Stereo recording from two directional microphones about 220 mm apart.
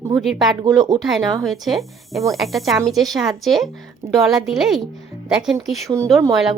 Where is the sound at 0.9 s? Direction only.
Centre (ahead or behind).